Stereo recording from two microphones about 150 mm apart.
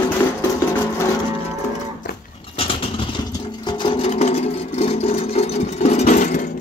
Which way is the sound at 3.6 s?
35° left (ahead or behind).